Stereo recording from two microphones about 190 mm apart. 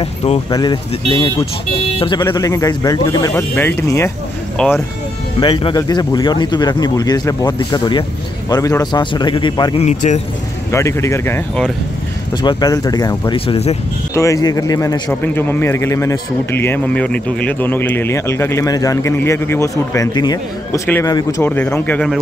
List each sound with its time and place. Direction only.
0.0 s speech: 35° left (ahead or behind)
0.5 s speech: 20° left (ahead or behind)
4.6 s speech: 5° left (ahead or behind)
5.4 s speech: 25° left (ahead or behind)
9.8 s speech: 35° left (ahead or behind)
10.7 s speech: 15° left (ahead or behind)
12.4 s speech: 20° left (ahead or behind)
14.1 s speech: 15° left (ahead or behind)